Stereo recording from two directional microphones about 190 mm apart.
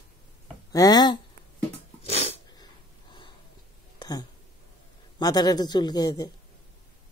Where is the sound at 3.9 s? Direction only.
20° left (ahead or behind).